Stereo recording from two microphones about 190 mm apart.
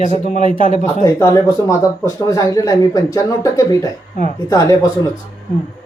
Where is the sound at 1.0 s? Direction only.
15° left (ahead or behind).